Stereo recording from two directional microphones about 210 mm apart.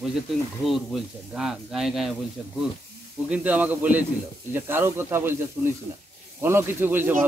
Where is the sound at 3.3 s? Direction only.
5° right (ahead or behind).